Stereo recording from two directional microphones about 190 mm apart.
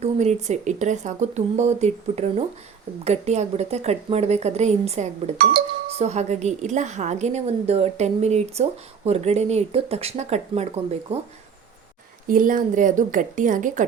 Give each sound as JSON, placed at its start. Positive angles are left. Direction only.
{"t": 0.0, "sound": "a woman's voice", "side_deg": -35}
{"t": 12.3, "sound": "a woman's voice", "side_deg": -45}